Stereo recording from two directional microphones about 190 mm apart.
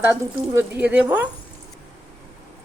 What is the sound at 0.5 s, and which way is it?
Speech, 10° right (ahead or behind).